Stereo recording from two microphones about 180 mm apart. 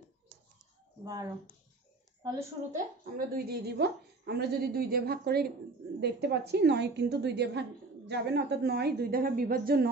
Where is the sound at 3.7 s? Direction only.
65° right (ahead or behind).